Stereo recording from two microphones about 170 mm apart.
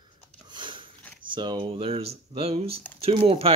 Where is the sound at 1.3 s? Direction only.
30° right (ahead or behind).